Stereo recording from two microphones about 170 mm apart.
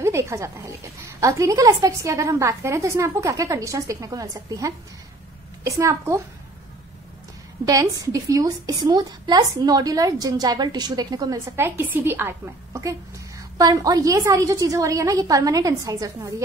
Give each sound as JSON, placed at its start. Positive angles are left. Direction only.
{"t": 0.0, "sound": "a woman's voice", "side_deg": -15}
{"t": 7.6, "sound": "a woman's voice", "side_deg": -20}